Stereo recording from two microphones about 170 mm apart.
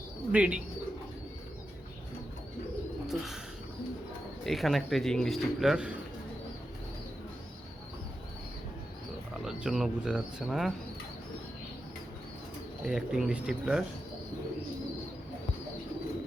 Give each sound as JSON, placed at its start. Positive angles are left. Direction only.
{"t": 0.3, "sound": "speech", "side_deg": -10}
{"t": 4.4, "sound": "a man's voice", "side_deg": 0}
{"t": 9.4, "sound": "a man's voice", "side_deg": -5}
{"t": 12.8, "sound": "a man's voice", "side_deg": -5}